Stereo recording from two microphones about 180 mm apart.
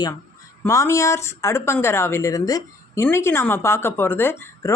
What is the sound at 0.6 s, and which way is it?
Speech, 15° left (ahead or behind).